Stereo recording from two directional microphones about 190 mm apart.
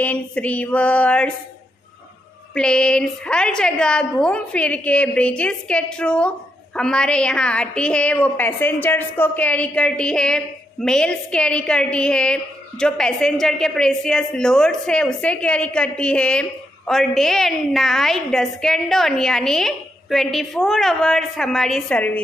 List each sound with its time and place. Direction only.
0.0 s female singing: 5° left (ahead or behind)
2.5 s a woman's voice: 5° left (ahead or behind)